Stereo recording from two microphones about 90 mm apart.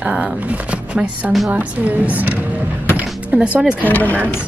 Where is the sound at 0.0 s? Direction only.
10° right (ahead or behind).